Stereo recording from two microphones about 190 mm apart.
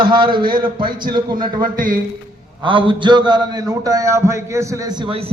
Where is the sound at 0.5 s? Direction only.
50° right (ahead or behind).